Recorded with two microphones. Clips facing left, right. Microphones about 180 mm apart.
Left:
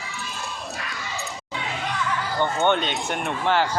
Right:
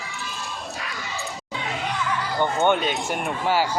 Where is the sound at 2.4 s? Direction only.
10° right (ahead or behind).